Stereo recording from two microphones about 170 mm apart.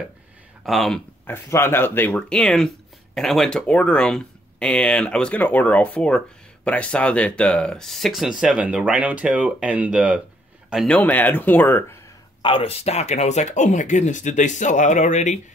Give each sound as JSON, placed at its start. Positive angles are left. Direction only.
{"t": 0.7, "sound": "speech", "side_deg": 0}
{"t": 11.0, "sound": "speech", "side_deg": 10}
{"t": 12.4, "sound": "speech", "side_deg": 30}